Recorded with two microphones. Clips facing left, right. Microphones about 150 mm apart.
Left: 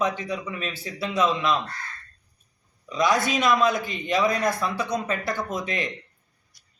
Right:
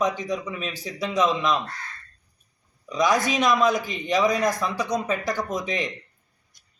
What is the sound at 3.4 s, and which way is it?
Speech, 15° right (ahead or behind).